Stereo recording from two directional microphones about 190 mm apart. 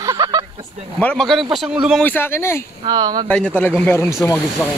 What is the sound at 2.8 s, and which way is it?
Speech, 20° right (ahead or behind).